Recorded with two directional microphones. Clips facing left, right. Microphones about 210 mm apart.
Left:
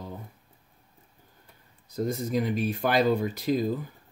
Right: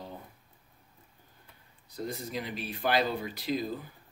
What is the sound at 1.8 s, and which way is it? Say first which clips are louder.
Speech: left 8 dB; 45° left (ahead or behind).